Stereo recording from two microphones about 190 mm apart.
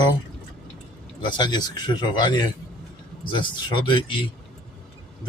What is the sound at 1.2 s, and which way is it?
Speech, 25° left (ahead or behind).